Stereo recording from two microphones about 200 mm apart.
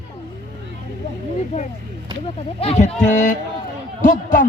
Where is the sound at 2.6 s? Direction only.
30° left (ahead or behind).